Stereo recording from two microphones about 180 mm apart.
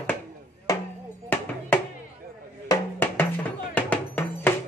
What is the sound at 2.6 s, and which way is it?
Music, 15° left (ahead or behind).